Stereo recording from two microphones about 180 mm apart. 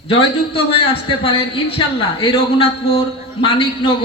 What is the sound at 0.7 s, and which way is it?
A man's voice, 30° left (ahead or behind).